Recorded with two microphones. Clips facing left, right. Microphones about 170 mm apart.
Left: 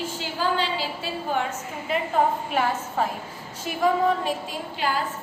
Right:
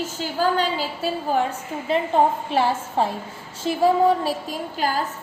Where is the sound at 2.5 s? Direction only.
30° right (ahead or behind).